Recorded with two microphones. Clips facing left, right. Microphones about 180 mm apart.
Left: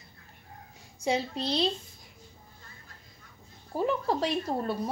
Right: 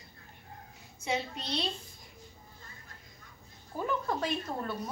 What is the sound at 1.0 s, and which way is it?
Speech, 35° left (ahead or behind).